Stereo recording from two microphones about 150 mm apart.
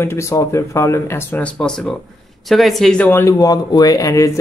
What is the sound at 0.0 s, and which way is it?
Speech, 20° left (ahead or behind).